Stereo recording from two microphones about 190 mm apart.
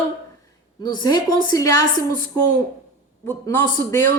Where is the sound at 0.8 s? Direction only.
20° left (ahead or behind).